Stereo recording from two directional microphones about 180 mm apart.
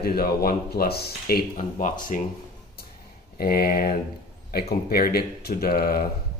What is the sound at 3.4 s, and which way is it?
Speech, 60° left (ahead or behind).